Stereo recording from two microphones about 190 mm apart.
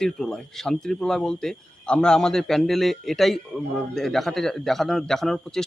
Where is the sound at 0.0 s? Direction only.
Centre (ahead or behind).